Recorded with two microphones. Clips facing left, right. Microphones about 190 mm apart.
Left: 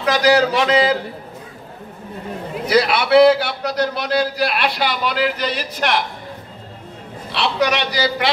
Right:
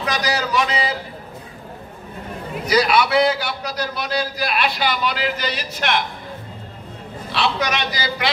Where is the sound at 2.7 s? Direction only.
60° left (ahead or behind).